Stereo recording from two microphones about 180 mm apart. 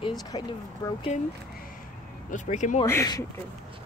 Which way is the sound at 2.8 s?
15° left (ahead or behind).